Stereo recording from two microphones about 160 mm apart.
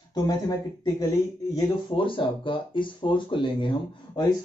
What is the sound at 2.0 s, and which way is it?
Speech, 30° left (ahead or behind).